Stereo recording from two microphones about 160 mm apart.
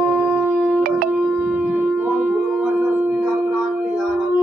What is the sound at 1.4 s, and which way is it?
Shofar, 10° right (ahead or behind).